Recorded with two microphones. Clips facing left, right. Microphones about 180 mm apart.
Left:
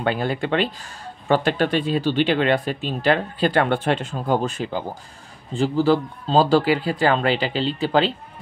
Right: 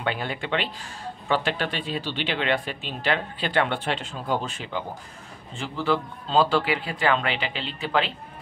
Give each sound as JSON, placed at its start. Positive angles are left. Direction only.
{"t": 0.0, "sound": "speech", "side_deg": 40}